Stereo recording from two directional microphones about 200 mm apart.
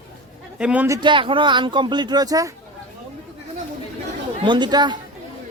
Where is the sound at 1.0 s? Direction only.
25° right (ahead or behind).